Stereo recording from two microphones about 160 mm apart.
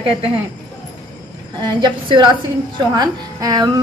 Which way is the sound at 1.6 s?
30° right (ahead or behind).